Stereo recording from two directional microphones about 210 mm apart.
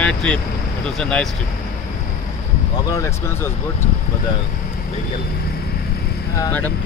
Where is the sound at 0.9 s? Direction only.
Centre (ahead or behind).